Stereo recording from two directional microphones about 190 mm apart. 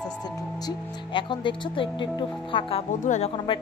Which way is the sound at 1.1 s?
25° left (ahead or behind).